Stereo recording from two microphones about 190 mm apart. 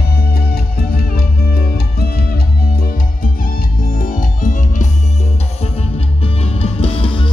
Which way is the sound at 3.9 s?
45° left (ahead or behind).